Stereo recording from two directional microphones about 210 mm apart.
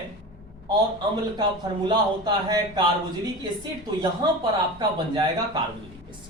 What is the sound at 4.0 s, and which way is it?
Speech, 20° right (ahead or behind).